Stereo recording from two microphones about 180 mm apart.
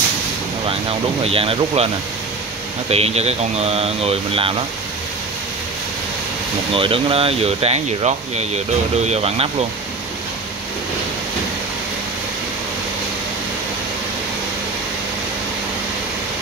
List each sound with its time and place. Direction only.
0.7 s speech: 30° right (ahead or behind)
2.9 s speech: 35° right (ahead or behind)
6.7 s speech: 30° right (ahead or behind)